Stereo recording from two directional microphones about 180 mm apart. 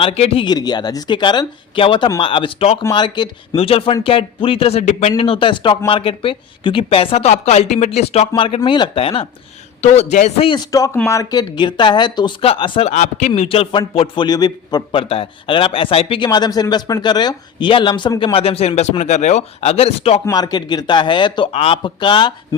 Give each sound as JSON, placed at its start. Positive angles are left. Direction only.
{"t": 0.0, "sound": "a man's voice", "side_deg": 30}
{"t": 12.9, "sound": "a man's voice", "side_deg": 40}
{"t": 20.2, "sound": "a man's voice", "side_deg": 20}